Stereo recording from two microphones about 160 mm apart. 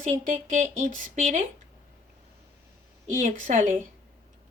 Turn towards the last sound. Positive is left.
turn(degrees=-55)  # may be behind; listen again after turning